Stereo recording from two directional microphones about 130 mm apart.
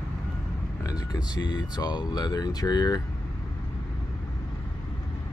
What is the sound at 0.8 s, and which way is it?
Speech, 30° left (ahead or behind).